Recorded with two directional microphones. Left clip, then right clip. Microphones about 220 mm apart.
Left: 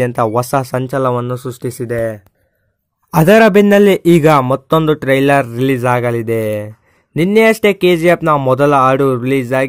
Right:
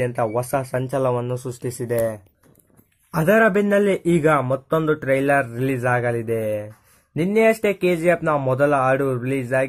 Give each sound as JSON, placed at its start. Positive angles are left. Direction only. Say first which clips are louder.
{"t": 0.0, "sound": "a man's voice", "louder": "left 8 dB", "side_deg": 40}
{"t": 3.1, "sound": "a man's voice", "louder": "left 8 dB", "side_deg": 40}